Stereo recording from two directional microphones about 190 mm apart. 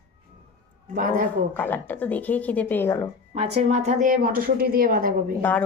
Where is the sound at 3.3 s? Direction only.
35° right (ahead or behind).